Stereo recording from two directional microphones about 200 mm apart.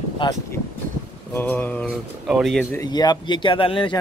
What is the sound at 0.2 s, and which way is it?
Speech, 15° left (ahead or behind).